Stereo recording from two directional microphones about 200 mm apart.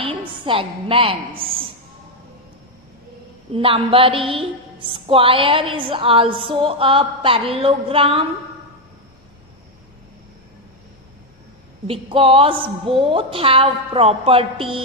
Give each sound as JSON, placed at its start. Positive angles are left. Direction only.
{"t": 0.0, "sound": "a woman's voice", "side_deg": -25}
{"t": 3.5, "sound": "a woman's voice", "side_deg": -25}
{"t": 11.9, "sound": "a woman's voice", "side_deg": -25}